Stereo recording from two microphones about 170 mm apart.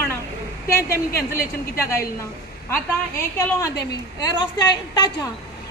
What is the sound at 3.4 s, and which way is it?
A woman's voice, 15° left (ahead or behind).